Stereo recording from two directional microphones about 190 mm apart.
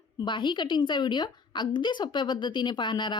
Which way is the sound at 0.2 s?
25° left (ahead or behind).